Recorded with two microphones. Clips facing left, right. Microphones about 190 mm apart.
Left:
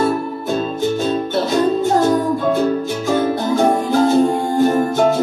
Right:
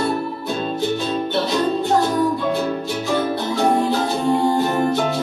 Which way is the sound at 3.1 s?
45° left (ahead or behind).